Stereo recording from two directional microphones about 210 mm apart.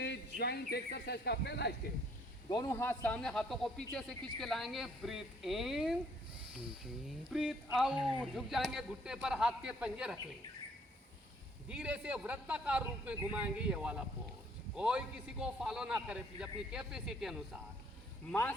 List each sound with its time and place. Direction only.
0.0 s speech: 50° left (ahead or behind)
2.5 s a man's voice: 15° left (ahead or behind); by 6.0 s centre (ahead or behind)
7.3 s a man's voice: centre (ahead or behind)
11.7 s a man's voice: 5° right (ahead or behind)
18.3 s speech: 10° left (ahead or behind)